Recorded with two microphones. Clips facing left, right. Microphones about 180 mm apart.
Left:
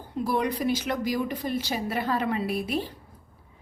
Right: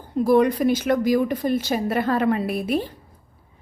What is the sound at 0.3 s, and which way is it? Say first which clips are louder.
A woman's voice: right 9 dB; 50° right (ahead or behind).